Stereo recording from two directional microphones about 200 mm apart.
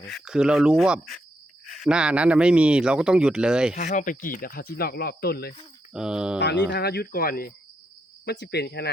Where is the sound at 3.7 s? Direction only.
40° left (ahead or behind).